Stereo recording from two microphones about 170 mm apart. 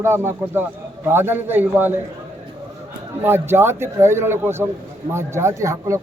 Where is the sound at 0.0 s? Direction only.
15° right (ahead or behind).